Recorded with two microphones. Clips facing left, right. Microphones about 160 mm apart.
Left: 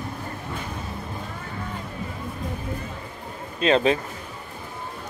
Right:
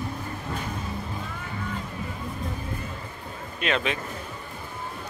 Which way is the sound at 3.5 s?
30° left (ahead or behind).